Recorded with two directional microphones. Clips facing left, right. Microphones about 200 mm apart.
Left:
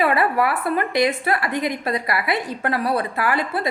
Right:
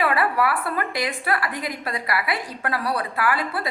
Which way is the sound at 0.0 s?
25° left (ahead or behind).